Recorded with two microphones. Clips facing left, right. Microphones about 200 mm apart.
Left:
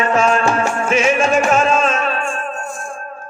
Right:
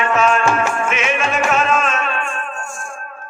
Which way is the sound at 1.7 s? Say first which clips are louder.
Left 3 dB; 30° left (ahead or behind).